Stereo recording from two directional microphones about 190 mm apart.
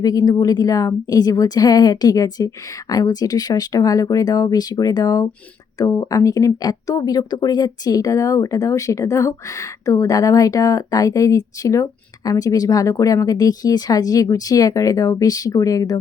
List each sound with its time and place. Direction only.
0.0 s a woman's voice: 20° left (ahead or behind)